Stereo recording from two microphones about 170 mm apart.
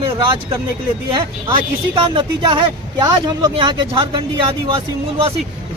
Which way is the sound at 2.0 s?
25° right (ahead or behind).